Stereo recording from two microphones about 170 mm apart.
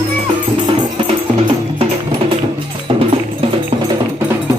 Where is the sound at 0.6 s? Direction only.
25° right (ahead or behind).